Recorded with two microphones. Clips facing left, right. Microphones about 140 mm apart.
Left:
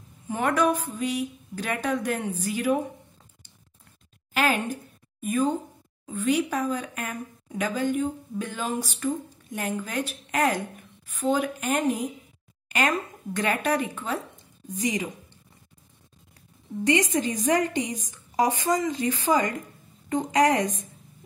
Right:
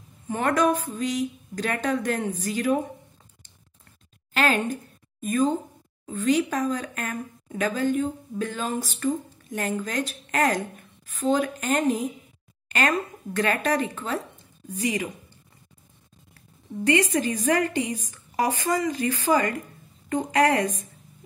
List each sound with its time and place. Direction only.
0.3 s a woman's voice: 10° left (ahead or behind)
4.3 s a sound: 10° left (ahead or behind)
6.0 s a woman's voice: 10° left (ahead or behind)
16.8 s a woman's voice: 15° left (ahead or behind)